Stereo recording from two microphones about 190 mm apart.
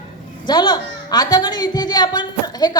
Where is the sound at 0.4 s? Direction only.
25° left (ahead or behind).